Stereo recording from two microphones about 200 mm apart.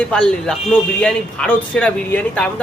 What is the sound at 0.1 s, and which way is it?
A man's voice, 5° left (ahead or behind).